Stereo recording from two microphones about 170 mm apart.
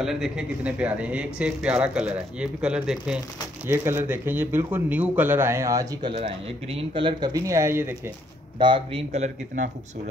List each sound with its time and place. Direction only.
0.0 s speech: 5° right (ahead or behind); by 6.1 s 20° right (ahead or behind)
6.1 s speech: 30° right (ahead or behind); by 8.1 s 15° right (ahead or behind)
8.5 s a man's voice: 30° right (ahead or behind)